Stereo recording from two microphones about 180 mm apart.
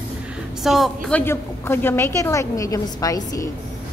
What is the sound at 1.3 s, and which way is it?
A woman's voice, 10° left (ahead or behind).